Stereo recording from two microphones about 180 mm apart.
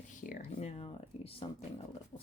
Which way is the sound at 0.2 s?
45° left (ahead or behind).